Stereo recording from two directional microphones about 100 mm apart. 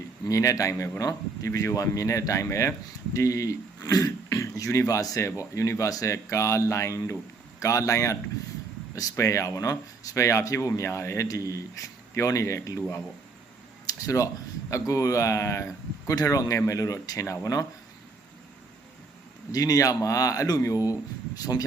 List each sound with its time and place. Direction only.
0.3 s speech: 35° left (ahead or behind)
19.5 s speech: 35° left (ahead or behind)